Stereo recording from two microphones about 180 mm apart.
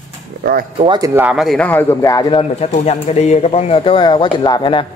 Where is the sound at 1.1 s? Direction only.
5° right (ahead or behind); by 2.4 s 20° left (ahead or behind).